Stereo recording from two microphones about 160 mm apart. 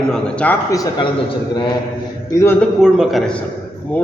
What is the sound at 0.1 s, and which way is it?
Speech, 10° left (ahead or behind).